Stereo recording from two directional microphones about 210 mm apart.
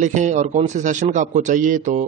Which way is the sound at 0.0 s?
35° right (ahead or behind).